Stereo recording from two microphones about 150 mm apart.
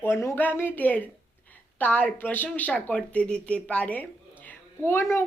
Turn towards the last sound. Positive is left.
turn(degrees=15)  # may be behind; listen again after turning